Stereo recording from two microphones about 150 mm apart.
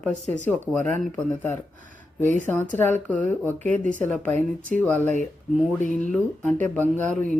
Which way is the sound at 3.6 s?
55° right (ahead or behind).